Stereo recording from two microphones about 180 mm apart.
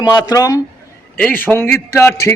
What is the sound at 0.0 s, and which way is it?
A man's voice, 20° left (ahead or behind).